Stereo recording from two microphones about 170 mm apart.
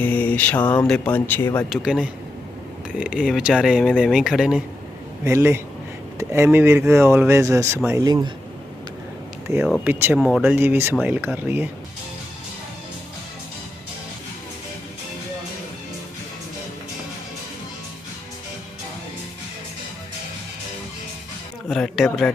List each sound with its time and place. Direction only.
0.0 s mantra: 10° left (ahead or behind)
0.7 s speech: 5° left (ahead or behind)
1.7 s speech: 5° right (ahead or behind)
5.2 s speech: 15° right (ahead or behind)
9.5 s speech: 15° right (ahead or behind)
10.2 s speech: centre (ahead or behind)
21.7 s a sound: centre (ahead or behind)